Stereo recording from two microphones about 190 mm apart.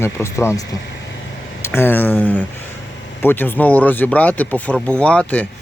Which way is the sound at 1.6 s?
10° left (ahead or behind).